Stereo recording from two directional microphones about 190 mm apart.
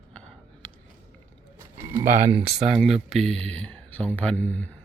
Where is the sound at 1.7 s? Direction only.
15° right (ahead or behind).